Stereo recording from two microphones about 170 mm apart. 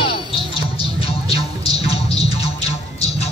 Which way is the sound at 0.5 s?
35° left (ahead or behind).